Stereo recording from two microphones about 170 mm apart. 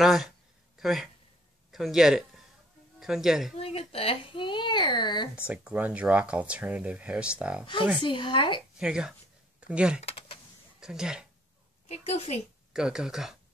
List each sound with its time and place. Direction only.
0.0 s a woman's voice: centre (ahead or behind)
3.5 s a child's voice: 35° left (ahead or behind)
5.5 s speech: 10° right (ahead or behind)
8.0 s a child's voice: 30° left (ahead or behind)
8.7 s a woman's voice: 5° right (ahead or behind)
9.9 s typing: 35° left (ahead or behind)
10.8 s speech: 5° right (ahead or behind)
11.9 s a woman's voice: 40° left (ahead or behind)
12.7 s speech: 5° right (ahead or behind)